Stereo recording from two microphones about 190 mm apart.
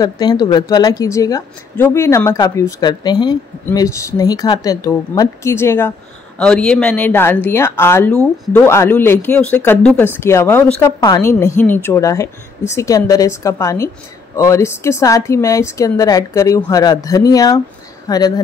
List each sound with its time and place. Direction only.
0.0 s speech: 20° left (ahead or behind)